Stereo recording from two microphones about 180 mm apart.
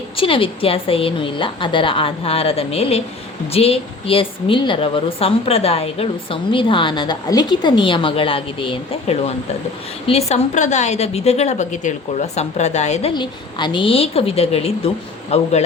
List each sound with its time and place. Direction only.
0.2 s a woman's voice: 30° left (ahead or behind)
13.1 s a woman's voice: 25° left (ahead or behind)